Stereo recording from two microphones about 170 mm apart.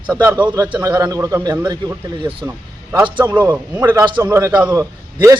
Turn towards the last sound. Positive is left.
turn(degrees=-15)  # may be behind; listen again after turning